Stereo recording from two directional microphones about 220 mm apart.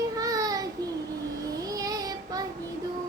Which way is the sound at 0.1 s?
15° right (ahead or behind).